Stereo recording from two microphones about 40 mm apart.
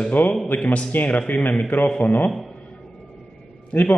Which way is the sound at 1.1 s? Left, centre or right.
Left.